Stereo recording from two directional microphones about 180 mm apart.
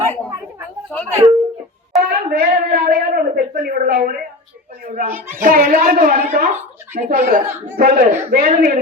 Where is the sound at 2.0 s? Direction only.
60° right (ahead or behind).